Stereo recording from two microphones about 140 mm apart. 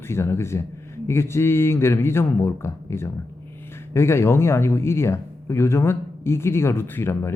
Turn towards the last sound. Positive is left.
turn(degrees=15)  # may be behind; listen again after turning